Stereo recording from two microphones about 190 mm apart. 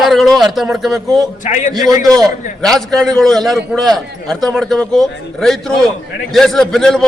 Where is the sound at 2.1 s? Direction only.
Centre (ahead or behind).